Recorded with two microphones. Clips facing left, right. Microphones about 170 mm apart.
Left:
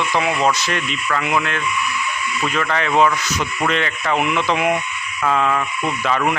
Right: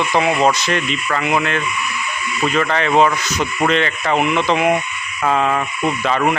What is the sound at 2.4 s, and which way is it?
Speech, 25° right (ahead or behind).